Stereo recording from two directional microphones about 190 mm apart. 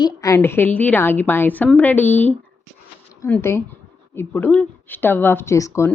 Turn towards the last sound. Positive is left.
turn(degrees=15)  # may be behind; listen again after turning